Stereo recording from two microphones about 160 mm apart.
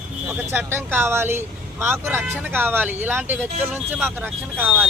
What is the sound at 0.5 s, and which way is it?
Speech, 15° right (ahead or behind).